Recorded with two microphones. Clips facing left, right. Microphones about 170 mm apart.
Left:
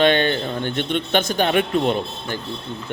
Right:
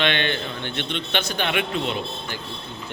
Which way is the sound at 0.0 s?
40° left (ahead or behind).